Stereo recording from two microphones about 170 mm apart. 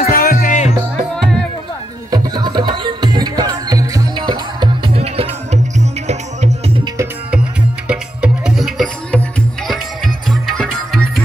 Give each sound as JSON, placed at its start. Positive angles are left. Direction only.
{"t": 0.1, "sound": "music", "side_deg": 60}
{"t": 1.1, "sound": "music", "side_deg": 5}
{"t": 2.0, "sound": "music", "side_deg": -25}
{"t": 7.9, "sound": "music", "side_deg": -5}